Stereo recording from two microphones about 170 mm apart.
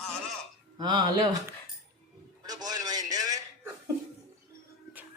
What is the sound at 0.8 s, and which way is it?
Speech, 25° right (ahead or behind).